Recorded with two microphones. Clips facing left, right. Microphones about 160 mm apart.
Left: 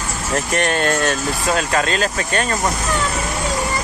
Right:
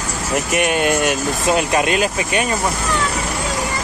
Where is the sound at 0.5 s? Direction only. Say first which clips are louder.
Right 2 dB; 10° right (ahead or behind).